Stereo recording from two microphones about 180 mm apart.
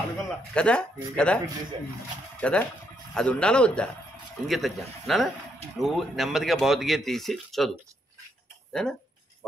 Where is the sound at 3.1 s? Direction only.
5° left (ahead or behind).